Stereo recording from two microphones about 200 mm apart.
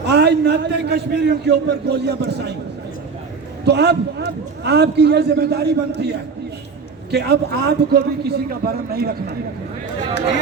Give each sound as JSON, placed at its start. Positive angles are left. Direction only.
{"t": 0.1, "sound": "a man's voice", "side_deg": -55}
{"t": 3.6, "sound": "a man's voice", "side_deg": -55}
{"t": 7.1, "sound": "a man's voice", "side_deg": -55}